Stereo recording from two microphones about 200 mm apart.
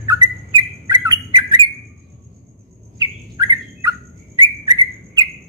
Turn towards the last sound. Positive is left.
turn(degrees=-20)  # may be behind; listen again after turning